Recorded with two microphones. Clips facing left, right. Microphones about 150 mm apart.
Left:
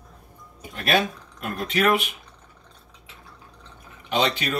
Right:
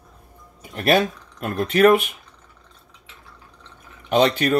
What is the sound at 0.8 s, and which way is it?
Speech, 45° right (ahead or behind).